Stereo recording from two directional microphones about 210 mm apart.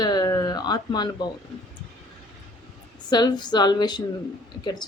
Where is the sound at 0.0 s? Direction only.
20° left (ahead or behind).